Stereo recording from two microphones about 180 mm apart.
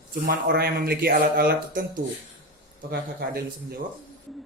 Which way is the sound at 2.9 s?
60° right (ahead or behind).